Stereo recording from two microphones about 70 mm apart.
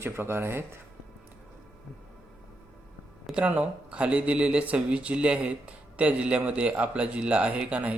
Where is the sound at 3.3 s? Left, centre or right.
Right.